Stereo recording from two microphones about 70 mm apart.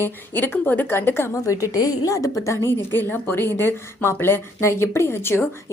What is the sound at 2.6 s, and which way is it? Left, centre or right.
A woman's voice, left.